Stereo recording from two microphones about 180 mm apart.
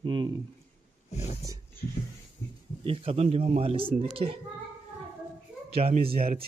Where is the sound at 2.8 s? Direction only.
30° right (ahead or behind).